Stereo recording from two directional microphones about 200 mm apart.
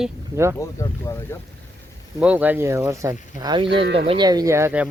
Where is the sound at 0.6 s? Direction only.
15° left (ahead or behind).